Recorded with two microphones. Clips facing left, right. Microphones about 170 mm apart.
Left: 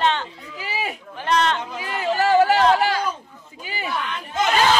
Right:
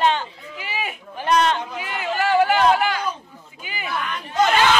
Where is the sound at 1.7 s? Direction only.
35° left (ahead or behind).